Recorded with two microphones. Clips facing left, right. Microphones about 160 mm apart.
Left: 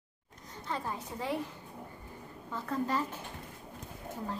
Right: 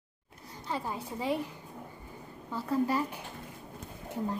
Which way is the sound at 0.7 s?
10° right (ahead or behind).